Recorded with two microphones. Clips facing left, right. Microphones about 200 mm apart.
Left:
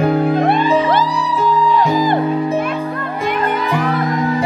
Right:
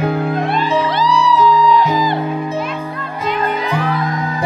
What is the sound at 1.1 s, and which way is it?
Music, 80° right.